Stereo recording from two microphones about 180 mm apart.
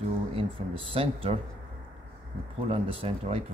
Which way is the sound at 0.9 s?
30° right (ahead or behind).